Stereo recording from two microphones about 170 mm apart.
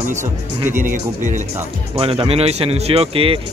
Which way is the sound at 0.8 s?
45° right (ahead or behind).